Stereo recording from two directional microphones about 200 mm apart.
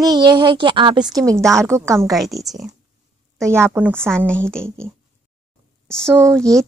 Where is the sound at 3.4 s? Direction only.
15° right (ahead or behind).